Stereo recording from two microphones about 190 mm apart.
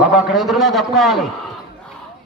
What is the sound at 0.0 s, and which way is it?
A man's voice, centre (ahead or behind).